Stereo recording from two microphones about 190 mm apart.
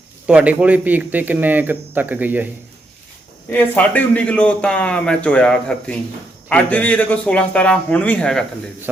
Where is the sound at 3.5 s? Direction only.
10° left (ahead or behind).